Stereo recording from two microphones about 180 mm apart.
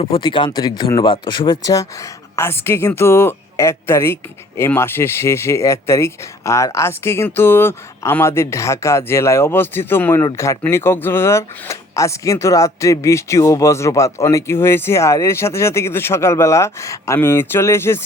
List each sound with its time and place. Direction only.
0.0 s speech: 30° left (ahead or behind)